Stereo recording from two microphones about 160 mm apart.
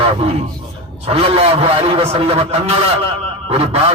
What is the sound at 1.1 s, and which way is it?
A man's voice, 40° right (ahead or behind).